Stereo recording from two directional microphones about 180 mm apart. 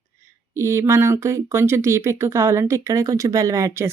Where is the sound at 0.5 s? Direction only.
15° right (ahead or behind).